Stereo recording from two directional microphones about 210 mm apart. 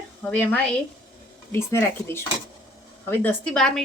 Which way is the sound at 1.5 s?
10° left (ahead or behind).